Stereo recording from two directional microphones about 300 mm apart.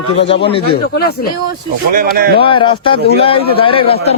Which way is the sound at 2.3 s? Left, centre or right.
Centre.